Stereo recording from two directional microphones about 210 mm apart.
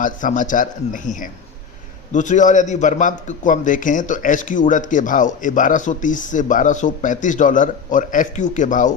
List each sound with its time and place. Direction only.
0.0 s a man's voice: 40° left (ahead or behind)